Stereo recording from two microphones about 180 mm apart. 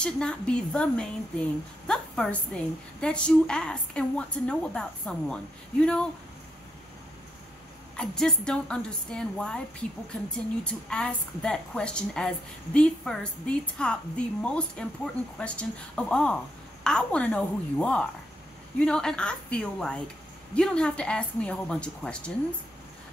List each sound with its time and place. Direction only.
0.0 s a woman's voice: 5° left (ahead or behind)
8.0 s a woman's voice: 5° left (ahead or behind)